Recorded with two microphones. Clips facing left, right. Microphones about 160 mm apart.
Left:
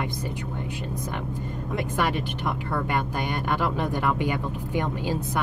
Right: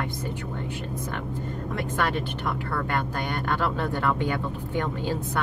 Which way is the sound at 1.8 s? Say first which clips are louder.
Left 1 dB; 15° left (ahead or behind).